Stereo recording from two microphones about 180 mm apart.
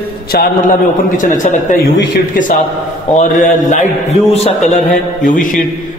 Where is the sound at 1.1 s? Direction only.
45° left (ahead or behind).